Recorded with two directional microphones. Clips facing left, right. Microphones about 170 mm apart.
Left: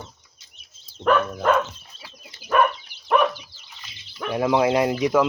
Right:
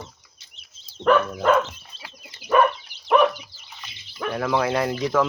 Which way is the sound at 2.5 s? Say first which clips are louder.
Right 2 dB; centre (ahead or behind).